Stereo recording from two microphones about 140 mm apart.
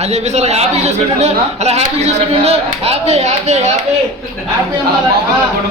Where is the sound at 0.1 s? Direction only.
50° right (ahead or behind).